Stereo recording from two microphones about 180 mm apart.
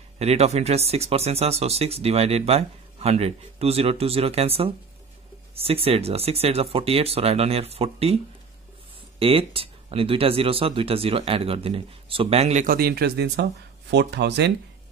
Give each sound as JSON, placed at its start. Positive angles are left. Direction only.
{"t": 0.2, "sound": "speech", "side_deg": -35}
{"t": 9.2, "sound": "speech", "side_deg": -30}
{"t": 12.6, "sound": "speech", "side_deg": -55}